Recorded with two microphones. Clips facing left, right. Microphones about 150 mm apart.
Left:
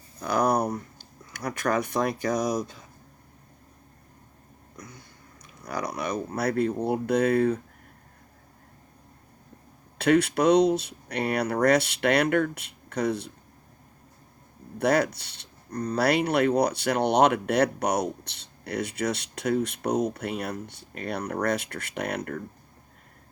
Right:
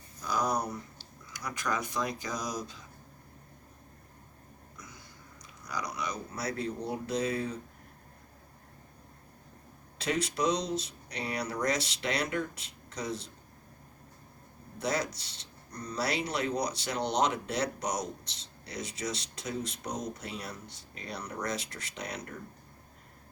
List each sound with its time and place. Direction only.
0.2 s speech: 60° left (ahead or behind)
5.6 s speech: 55° left (ahead or behind)
10.0 s speech: 60° left (ahead or behind)
14.8 s speech: 65° left (ahead or behind)